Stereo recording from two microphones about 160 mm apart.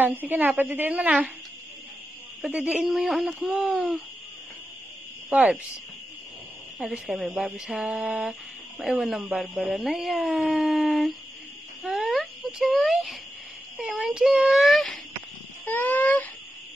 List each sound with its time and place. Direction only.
0.0 s a woman's voice: 10° right (ahead or behind)
2.4 s speech: 10° right (ahead or behind)
5.3 s a woman's voice: 5° right (ahead or behind)
6.8 s speech: centre (ahead or behind)
15.6 s a sound: 10° left (ahead or behind)